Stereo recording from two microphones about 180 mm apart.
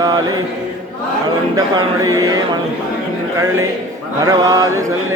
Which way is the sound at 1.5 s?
20° right (ahead or behind).